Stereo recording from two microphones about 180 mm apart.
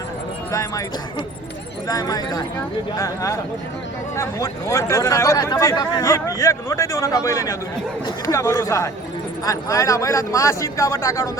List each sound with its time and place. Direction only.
0.5 s speech: 20° left (ahead or behind)
1.9 s speech: 20° left (ahead or behind)